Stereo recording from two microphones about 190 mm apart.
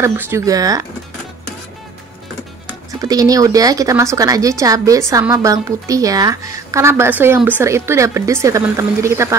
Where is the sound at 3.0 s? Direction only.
20° right (ahead or behind).